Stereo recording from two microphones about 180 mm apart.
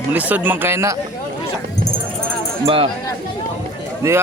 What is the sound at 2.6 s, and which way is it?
Speech, 30° right (ahead or behind).